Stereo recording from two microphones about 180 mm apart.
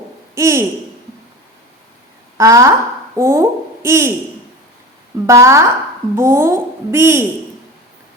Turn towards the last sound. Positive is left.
turn(degrees=-15)  # may be behind; listen again after turning